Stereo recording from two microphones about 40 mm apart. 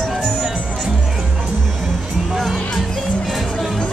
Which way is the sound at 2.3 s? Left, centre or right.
Centre.